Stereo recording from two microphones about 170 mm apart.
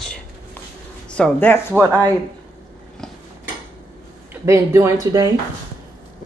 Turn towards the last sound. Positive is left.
turn(degrees=-20)  # may be behind; listen again after turning